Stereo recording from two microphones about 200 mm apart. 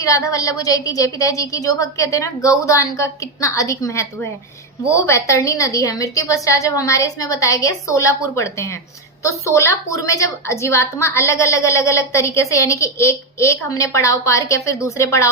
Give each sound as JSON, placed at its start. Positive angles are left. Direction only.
{"t": 0.0, "sound": "a woman's voice", "side_deg": 15}